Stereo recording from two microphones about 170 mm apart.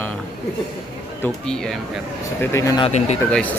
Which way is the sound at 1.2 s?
5° left (ahead or behind).